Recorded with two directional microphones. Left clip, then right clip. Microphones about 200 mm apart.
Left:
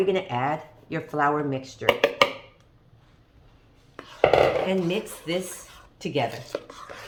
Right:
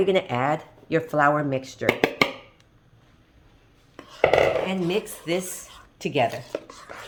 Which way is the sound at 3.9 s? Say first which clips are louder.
Even; 15° right (ahead or behind).